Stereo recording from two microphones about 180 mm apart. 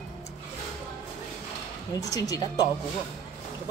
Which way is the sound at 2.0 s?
20° left (ahead or behind).